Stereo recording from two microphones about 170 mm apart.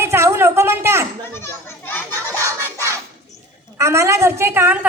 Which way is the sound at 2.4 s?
15° right (ahead or behind).